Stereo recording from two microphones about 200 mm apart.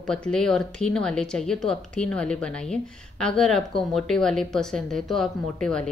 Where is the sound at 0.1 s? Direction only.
5° left (ahead or behind).